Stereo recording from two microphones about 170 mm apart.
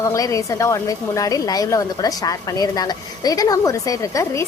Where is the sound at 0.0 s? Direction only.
20° left (ahead or behind).